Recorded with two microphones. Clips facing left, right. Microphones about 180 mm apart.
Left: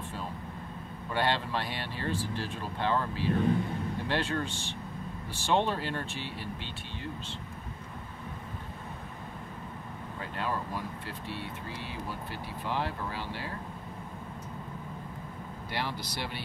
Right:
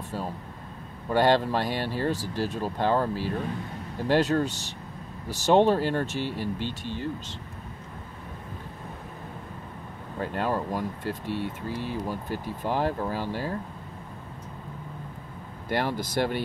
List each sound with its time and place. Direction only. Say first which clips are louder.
1.1 s speech: right 8 dB; 40° right (ahead or behind)
10.2 s speech: right 7 dB; 45° right (ahead or behind)
15.7 s speech: right 9 dB; 50° right (ahead or behind)